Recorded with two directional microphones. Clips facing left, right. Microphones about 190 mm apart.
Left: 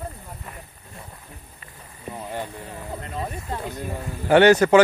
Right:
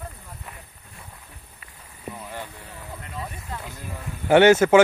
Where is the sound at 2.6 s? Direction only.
40° left (ahead or behind).